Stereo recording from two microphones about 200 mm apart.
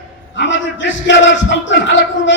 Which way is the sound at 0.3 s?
65° left (ahead or behind).